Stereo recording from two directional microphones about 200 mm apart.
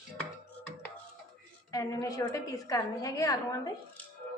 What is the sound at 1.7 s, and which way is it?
A woman's voice, 15° left (ahead or behind).